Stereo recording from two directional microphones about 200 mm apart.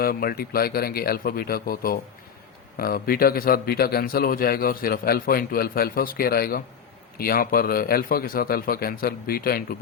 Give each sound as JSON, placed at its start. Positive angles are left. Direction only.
{"t": 0.0, "sound": "a man's voice", "side_deg": 50}